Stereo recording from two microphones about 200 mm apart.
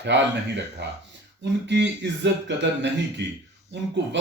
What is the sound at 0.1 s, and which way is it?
A man's voice, 60° right (ahead or behind).